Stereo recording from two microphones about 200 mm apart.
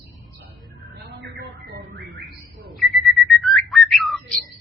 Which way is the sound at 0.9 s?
60° right (ahead or behind).